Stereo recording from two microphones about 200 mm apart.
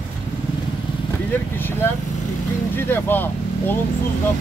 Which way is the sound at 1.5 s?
10° left (ahead or behind).